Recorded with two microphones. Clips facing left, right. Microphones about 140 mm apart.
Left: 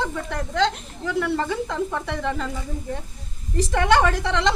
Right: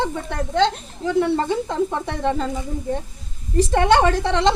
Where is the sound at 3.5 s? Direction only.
25° right (ahead or behind).